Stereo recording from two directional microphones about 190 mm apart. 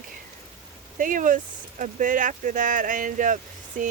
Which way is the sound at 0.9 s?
45° right (ahead or behind).